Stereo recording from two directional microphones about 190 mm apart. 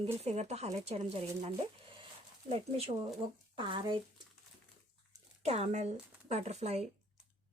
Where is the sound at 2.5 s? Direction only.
30° right (ahead or behind).